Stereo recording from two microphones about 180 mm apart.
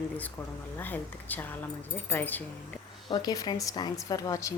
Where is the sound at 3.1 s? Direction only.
25° left (ahead or behind).